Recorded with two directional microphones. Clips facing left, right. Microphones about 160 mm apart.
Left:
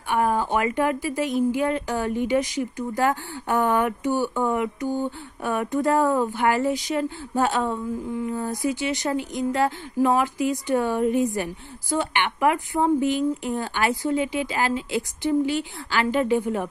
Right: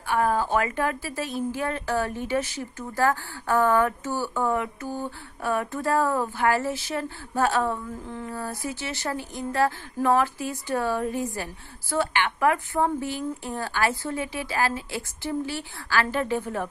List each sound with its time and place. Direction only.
0.1 s a woman's voice: 20° left (ahead or behind)